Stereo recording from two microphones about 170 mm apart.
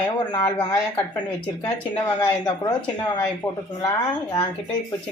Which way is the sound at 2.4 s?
25° left (ahead or behind).